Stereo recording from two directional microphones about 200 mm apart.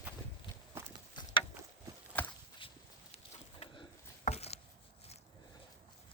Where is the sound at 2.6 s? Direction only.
25° left (ahead or behind).